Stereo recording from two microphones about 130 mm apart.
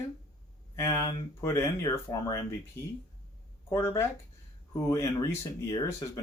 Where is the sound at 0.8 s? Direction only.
25° left (ahead or behind).